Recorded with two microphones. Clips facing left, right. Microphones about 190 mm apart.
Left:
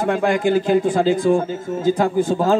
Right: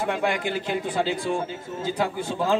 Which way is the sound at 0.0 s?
45° left (ahead or behind).